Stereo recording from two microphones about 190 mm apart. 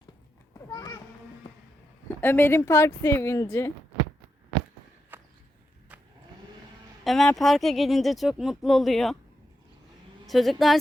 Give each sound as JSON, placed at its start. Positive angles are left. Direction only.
{"t": 0.7, "sound": "children playing", "side_deg": 20}
{"t": 2.2, "sound": "a woman's voice", "side_deg": 10}
{"t": 5.1, "sound": "walk", "side_deg": -10}
{"t": 7.0, "sound": "speech", "side_deg": 0}
{"t": 10.2, "sound": "speech", "side_deg": 0}